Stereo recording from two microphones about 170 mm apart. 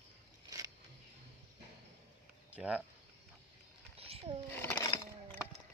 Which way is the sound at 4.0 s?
35° right (ahead or behind).